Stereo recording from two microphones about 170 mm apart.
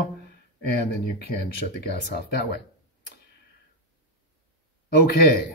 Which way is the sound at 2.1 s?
70° left (ahead or behind).